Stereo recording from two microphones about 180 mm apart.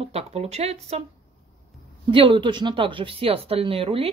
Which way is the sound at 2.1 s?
30° right (ahead or behind).